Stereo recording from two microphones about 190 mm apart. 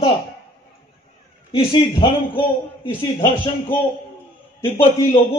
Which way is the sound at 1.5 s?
30° left (ahead or behind).